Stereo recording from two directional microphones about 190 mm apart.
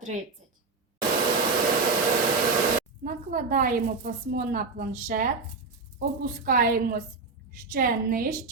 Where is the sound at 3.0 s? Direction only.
45° right (ahead or behind).